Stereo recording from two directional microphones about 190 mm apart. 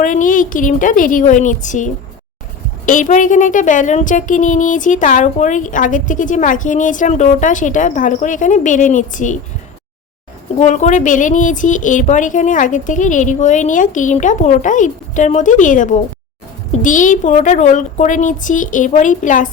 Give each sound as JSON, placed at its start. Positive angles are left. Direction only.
{"t": 0.0, "sound": "a woman's voice", "side_deg": 45}
{"t": 10.6, "sound": "speech", "side_deg": 40}